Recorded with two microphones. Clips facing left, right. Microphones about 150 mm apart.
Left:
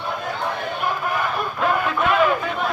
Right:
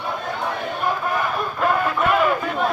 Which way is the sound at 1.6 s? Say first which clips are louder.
Right 1 dB; centre (ahead or behind).